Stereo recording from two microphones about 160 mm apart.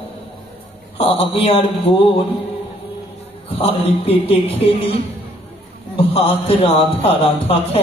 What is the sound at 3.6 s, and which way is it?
A man's voice, 40° left (ahead or behind).